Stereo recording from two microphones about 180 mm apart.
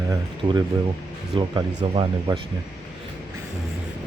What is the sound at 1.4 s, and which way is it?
Speech, 25° right (ahead or behind).